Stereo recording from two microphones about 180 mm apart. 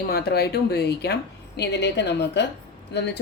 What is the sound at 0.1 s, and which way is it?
A woman's voice, 60° left (ahead or behind).